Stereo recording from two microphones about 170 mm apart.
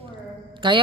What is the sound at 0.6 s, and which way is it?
Speech, 25° right (ahead or behind).